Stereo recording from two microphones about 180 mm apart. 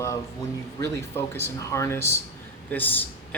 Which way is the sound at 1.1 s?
15° left (ahead or behind).